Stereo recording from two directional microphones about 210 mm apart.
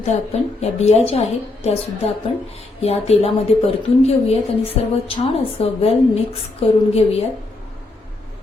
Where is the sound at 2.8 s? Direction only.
30° left (ahead or behind).